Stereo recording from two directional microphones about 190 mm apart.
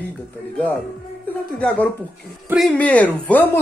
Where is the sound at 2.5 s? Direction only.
5° left (ahead or behind).